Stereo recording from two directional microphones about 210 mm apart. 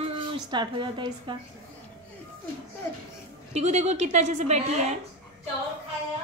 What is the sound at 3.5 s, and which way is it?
A woman's voice, 30° right (ahead or behind).